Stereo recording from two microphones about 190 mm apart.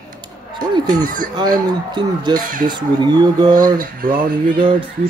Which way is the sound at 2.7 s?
20° right (ahead or behind).